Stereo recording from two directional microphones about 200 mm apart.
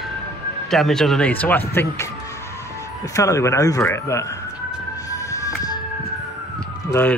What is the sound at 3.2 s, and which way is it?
Speech, 15° left (ahead or behind).